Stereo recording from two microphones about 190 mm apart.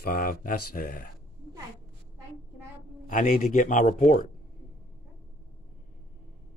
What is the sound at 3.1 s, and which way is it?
Speech, 45° left (ahead or behind).